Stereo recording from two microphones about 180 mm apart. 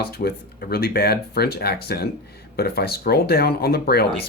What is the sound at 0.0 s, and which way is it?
Speech, 60° left (ahead or behind).